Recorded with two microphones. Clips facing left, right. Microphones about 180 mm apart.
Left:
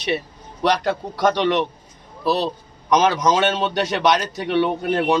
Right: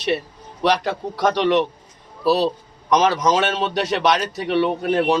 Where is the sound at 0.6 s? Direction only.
Centre (ahead or behind).